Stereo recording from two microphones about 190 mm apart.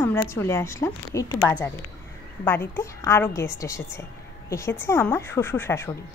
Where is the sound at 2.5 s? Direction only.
10° left (ahead or behind).